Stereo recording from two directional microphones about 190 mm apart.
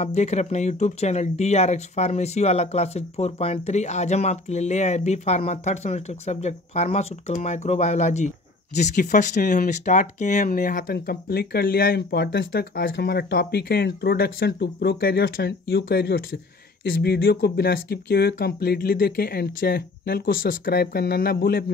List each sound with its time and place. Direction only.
0.0 s speech: 35° left (ahead or behind); by 21.7 s 55° left (ahead or behind)